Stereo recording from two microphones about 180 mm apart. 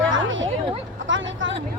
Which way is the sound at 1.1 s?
90° right.